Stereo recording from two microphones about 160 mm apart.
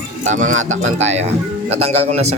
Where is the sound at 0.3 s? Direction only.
50° right (ahead or behind).